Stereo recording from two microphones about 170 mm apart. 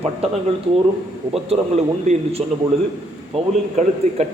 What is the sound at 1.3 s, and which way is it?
Speech, 35° right (ahead or behind).